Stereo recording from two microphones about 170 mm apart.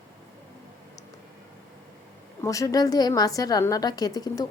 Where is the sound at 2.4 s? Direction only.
20° left (ahead or behind).